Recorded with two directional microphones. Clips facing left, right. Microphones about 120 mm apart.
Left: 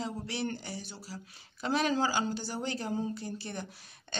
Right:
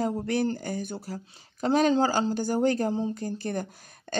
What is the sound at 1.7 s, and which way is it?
Speech, 35° right (ahead or behind).